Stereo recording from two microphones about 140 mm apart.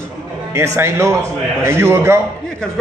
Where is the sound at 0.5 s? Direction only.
20° right (ahead or behind).